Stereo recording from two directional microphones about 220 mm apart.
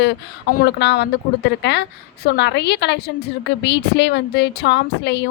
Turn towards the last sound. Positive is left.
turn(degrees=50)  # may be behind; listen again after turning